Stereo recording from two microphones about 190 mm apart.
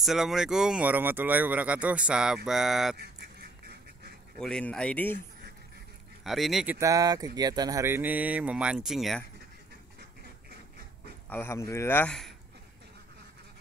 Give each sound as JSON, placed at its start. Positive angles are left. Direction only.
{"t": 0.0, "sound": "speech", "side_deg": 0}
{"t": 3.0, "sound": "duck", "side_deg": -55}
{"t": 4.4, "sound": "speech", "side_deg": 5}
{"t": 6.2, "sound": "speech", "side_deg": 0}
{"t": 6.8, "sound": "mantra", "side_deg": -20}
{"t": 11.2, "sound": "speech", "side_deg": 10}